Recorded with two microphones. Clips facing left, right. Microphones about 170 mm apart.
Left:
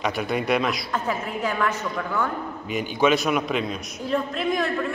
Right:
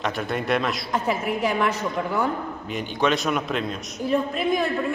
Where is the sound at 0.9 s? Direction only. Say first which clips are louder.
Right 3 dB; 15° right (ahead or behind).